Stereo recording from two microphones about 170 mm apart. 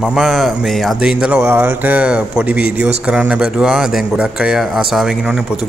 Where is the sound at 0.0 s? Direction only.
Centre (ahead or behind).